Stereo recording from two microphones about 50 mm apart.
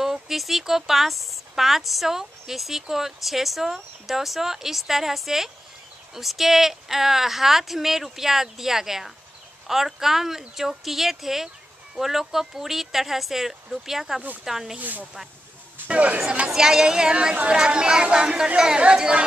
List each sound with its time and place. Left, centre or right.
0.0 s speech: centre
14.8 s speech: right
16.4 s speech: centre